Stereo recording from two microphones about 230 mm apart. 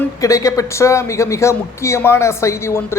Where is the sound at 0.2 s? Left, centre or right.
Centre.